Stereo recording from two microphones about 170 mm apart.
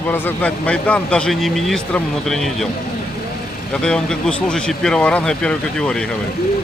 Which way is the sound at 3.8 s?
5° left (ahead or behind).